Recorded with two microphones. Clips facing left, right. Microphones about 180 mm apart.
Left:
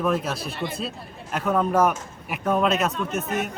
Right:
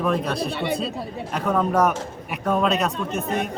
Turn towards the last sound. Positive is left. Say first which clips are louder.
# right 1 dB
turn(degrees=0)  # may be behind; listen again after turning